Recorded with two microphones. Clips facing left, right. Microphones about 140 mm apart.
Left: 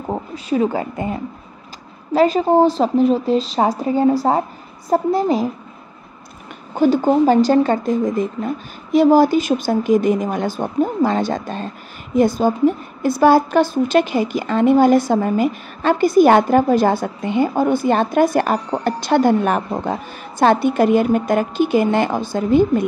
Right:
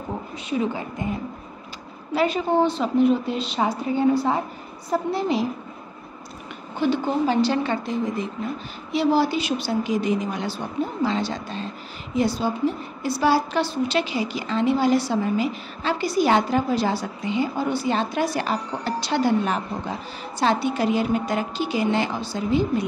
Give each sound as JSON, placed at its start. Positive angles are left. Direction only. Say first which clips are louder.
{"t": 0.5, "sound": "speech", "louder": "left 7 dB", "side_deg": 45}
{"t": 2.1, "sound": "speech", "louder": "left 7 dB", "side_deg": 40}
{"t": 6.7, "sound": "speech", "louder": "left 8 dB", "side_deg": 40}